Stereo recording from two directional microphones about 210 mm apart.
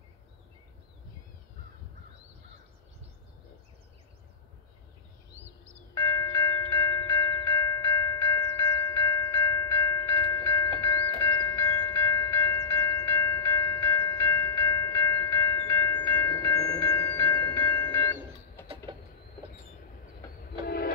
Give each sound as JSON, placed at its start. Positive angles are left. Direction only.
{"t": 5.9, "sound": "tubular bells", "side_deg": 15}
{"t": 10.8, "sound": "train", "side_deg": 10}
{"t": 18.9, "sound": "train", "side_deg": -25}
{"t": 20.6, "sound": "train", "side_deg": 45}